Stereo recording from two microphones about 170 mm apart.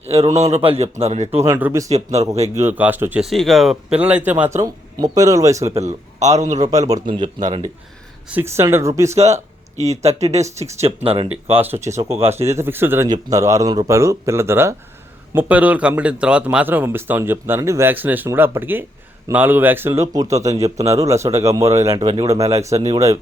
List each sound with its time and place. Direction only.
0.0 s a man's voice: 40° right (ahead or behind)
1.4 s speech: 15° right (ahead or behind)
1.9 s a man's voice: 40° right (ahead or behind)
2.6 s speech: 10° right (ahead or behind)
5.8 s a man's voice: 40° right (ahead or behind)
6.7 s speech: 20° right (ahead or behind)
8.3 s speech: 15° right (ahead or behind)
9.1 s a man's voice: 40° right (ahead or behind)
11.5 s speech: 10° right (ahead or behind)